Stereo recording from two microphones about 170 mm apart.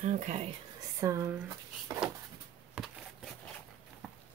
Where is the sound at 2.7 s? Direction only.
Centre (ahead or behind).